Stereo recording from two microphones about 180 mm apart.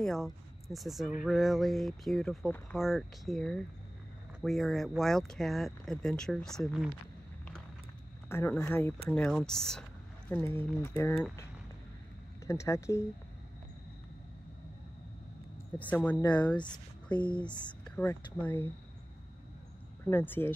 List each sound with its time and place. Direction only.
0.0 s speech: centre (ahead or behind)
8.3 s speech: 15° left (ahead or behind)
12.4 s speech: 15° left (ahead or behind)
15.9 s speech: 10° left (ahead or behind)
17.5 s speech: 25° left (ahead or behind)
17.9 s speech: 10° left (ahead or behind)
20.1 s speech: 10° left (ahead or behind)